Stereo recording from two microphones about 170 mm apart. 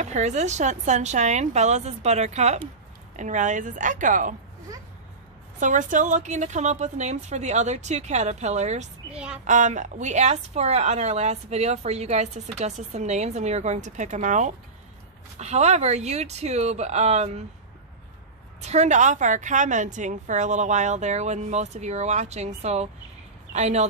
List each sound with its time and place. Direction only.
0.0 s a woman's voice: 45° right (ahead or behind)
5.6 s a woman's voice: 50° right (ahead or behind)
9.1 s a woman's voice: 5° right (ahead or behind)
9.4 s a woman's voice: 45° right (ahead or behind)
18.6 s a woman's voice: 40° right (ahead or behind)